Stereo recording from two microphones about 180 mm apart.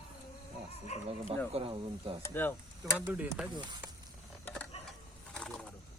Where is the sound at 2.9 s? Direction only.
10° right (ahead or behind).